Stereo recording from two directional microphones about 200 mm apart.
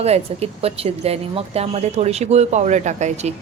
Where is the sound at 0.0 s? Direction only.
30° right (ahead or behind).